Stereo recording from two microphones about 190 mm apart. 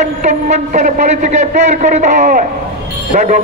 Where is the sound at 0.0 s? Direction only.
35° right (ahead or behind).